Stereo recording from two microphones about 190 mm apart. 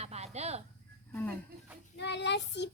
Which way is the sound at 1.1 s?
10° left (ahead or behind).